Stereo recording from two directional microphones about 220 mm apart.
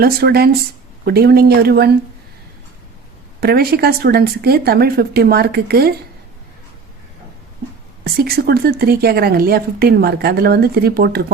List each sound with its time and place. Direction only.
0.0 s speech: 45° right (ahead or behind)
3.4 s speech: 45° right (ahead or behind)
8.0 s speech: 45° right (ahead or behind)